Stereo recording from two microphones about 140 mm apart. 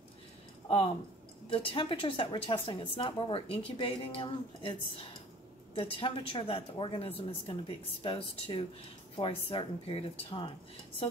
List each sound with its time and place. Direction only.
1.5 s a woman's voice: 40° left (ahead or behind)